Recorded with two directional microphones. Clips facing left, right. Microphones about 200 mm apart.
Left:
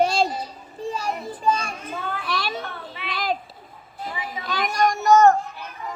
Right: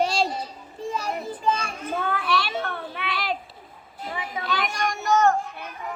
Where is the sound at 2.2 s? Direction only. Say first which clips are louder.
Right 2 dB; 40° left (ahead or behind).